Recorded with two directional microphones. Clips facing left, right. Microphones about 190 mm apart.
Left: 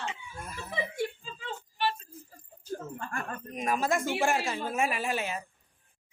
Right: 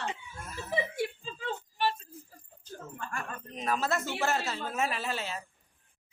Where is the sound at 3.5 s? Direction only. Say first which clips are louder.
Left 2 dB; 10° left (ahead or behind).